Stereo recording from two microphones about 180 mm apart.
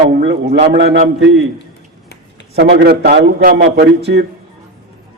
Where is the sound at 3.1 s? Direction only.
65° right (ahead or behind).